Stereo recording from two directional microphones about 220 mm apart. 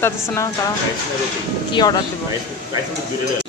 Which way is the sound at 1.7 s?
20° left (ahead or behind).